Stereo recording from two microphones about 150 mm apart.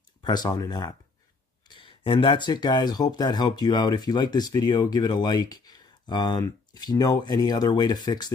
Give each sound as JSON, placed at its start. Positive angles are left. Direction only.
{"t": 0.2, "sound": "speech", "side_deg": 25}